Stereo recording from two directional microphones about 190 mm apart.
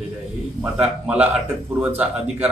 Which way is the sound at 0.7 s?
5° right (ahead or behind).